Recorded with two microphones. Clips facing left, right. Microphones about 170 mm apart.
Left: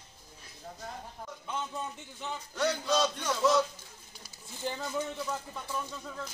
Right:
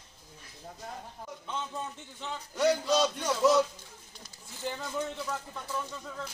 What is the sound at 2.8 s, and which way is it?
Speech, 5° right (ahead or behind).